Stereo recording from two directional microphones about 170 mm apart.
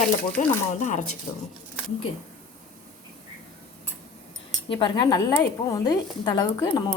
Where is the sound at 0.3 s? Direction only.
45° left (ahead or behind).